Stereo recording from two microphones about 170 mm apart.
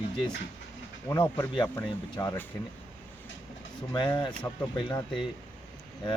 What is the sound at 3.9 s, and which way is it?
Speech, 25° left (ahead or behind).